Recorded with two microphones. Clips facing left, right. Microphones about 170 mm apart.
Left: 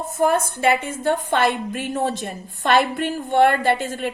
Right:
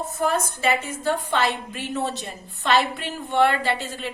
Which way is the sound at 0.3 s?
55° left (ahead or behind).